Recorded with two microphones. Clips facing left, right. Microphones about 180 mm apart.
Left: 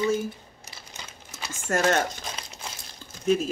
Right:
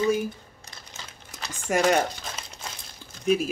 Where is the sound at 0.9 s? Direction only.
Centre (ahead or behind).